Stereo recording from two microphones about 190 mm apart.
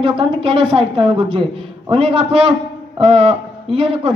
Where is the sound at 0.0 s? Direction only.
25° right (ahead or behind).